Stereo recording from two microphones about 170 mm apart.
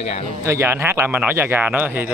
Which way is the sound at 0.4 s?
15° right (ahead or behind).